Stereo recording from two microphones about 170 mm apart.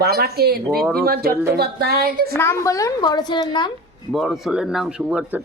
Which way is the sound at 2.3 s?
15° left (ahead or behind).